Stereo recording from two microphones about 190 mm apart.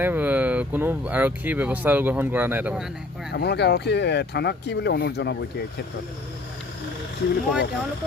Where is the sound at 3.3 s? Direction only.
60° left (ahead or behind).